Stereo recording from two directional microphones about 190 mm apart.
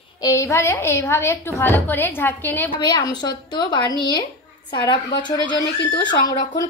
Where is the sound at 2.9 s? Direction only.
25° left (ahead or behind).